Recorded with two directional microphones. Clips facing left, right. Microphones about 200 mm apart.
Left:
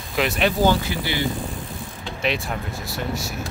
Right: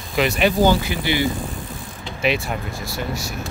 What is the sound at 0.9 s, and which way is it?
Speech, 15° right (ahead or behind).